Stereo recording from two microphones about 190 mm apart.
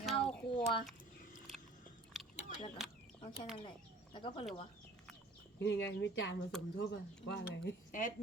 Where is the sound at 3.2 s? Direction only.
25° left (ahead or behind).